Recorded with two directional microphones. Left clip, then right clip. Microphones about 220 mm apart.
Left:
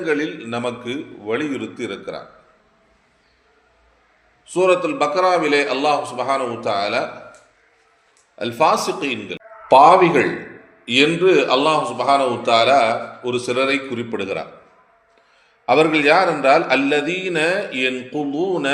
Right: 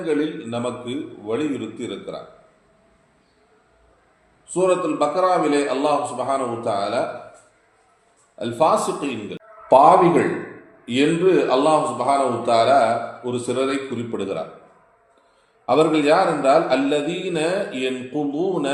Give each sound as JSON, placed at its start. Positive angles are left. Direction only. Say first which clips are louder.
{"t": 0.0, "sound": "a man's voice", "louder": "left 1 dB", "side_deg": 30}
{"t": 4.4, "sound": "a man's voice", "louder": "left 3 dB", "side_deg": 25}
{"t": 8.4, "sound": "a man's voice", "louder": "left 1 dB", "side_deg": 25}
{"t": 15.6, "sound": "a man's voice", "louder": "left 2 dB", "side_deg": 25}